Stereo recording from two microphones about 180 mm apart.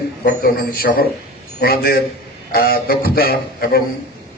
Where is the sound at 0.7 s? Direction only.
55° left (ahead or behind).